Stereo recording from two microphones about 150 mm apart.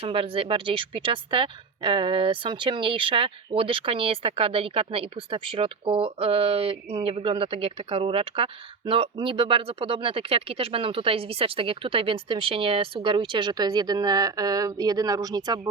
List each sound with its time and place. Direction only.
0.0 s a woman's voice: 40° right (ahead or behind)